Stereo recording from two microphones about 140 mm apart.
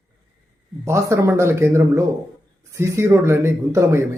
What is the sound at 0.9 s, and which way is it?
A man's voice, 20° right (ahead or behind).